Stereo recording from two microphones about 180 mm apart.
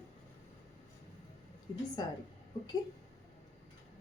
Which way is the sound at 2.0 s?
25° left (ahead or behind).